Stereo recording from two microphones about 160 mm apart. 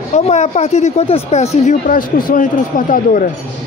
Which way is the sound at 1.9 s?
65° left (ahead or behind).